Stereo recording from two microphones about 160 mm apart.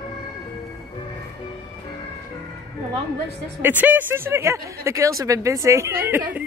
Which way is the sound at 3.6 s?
10° right (ahead or behind).